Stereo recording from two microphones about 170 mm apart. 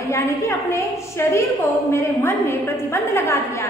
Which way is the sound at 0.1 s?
15° left (ahead or behind).